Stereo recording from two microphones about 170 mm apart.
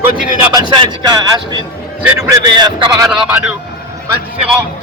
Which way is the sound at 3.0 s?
5° right (ahead or behind).